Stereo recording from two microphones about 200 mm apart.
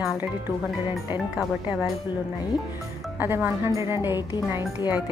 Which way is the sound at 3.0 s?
10° right (ahead or behind).